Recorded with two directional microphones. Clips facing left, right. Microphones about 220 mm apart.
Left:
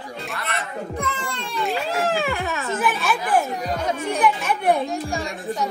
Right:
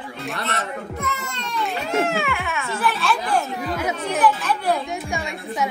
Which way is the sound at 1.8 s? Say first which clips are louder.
Right 1 dB; 35° left (ahead or behind).